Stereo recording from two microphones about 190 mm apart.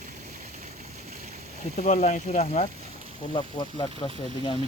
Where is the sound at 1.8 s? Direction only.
40° left (ahead or behind).